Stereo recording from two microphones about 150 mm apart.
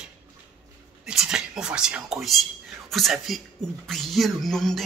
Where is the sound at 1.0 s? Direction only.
5° right (ahead or behind).